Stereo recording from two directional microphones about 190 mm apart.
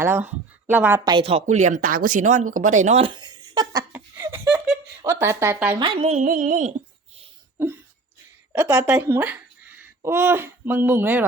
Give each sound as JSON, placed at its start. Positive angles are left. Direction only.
{"t": 0.0, "sound": "speech", "side_deg": -10}
{"t": 3.9, "sound": "a sound", "side_deg": -10}
{"t": 5.0, "sound": "speech", "side_deg": -15}
{"t": 5.8, "sound": "speech", "side_deg": -30}
{"t": 8.5, "sound": "speech", "side_deg": -10}